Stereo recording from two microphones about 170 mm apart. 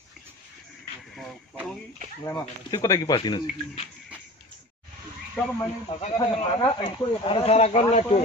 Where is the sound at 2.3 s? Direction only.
20° left (ahead or behind).